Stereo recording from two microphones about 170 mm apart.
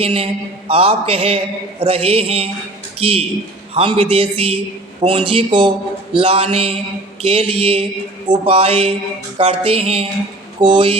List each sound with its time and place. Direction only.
0.0 s a man's voice: 35° right (ahead or behind)